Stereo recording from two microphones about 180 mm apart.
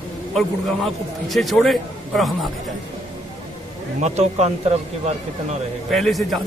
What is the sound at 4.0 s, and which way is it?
Speech, 40° right (ahead or behind).